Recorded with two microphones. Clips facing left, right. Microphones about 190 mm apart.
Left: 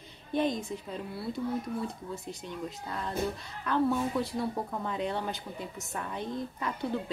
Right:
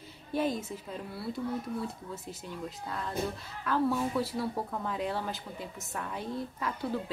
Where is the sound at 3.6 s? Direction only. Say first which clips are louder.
Left 1 dB; 5° right (ahead or behind).